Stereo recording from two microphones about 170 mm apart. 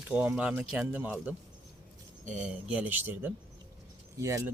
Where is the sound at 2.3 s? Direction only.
5° right (ahead or behind).